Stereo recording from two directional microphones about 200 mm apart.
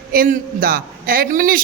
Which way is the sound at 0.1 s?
45° right (ahead or behind).